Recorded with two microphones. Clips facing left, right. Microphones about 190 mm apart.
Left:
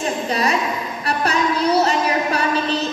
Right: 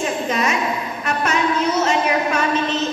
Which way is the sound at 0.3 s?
35° left (ahead or behind).